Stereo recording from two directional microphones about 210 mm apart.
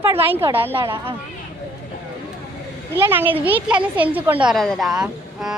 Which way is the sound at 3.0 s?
10° right (ahead or behind).